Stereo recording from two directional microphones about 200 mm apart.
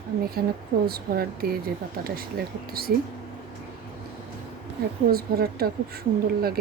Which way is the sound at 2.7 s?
50° right (ahead or behind).